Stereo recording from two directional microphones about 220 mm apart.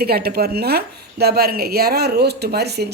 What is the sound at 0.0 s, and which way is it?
A woman's voice, 45° right (ahead or behind).